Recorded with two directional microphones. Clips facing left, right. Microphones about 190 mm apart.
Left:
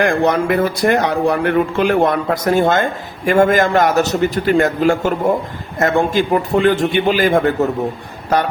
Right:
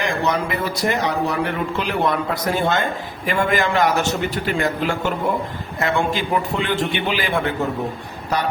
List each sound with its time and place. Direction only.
0.0 s a man's voice: 55° left (ahead or behind)